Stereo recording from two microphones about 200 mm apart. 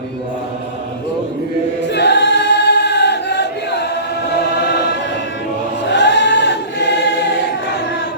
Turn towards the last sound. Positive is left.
turn(degrees=60)  # may be behind; listen again after turning